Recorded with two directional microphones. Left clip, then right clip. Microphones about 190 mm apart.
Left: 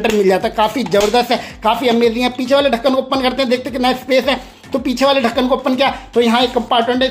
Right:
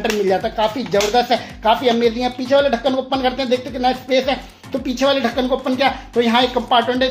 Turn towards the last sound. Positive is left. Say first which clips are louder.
# left 2 dB
turn(degrees=15)  # may be behind; listen again after turning